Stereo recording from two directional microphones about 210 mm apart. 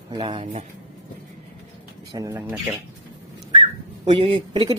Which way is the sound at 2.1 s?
15° right (ahead or behind).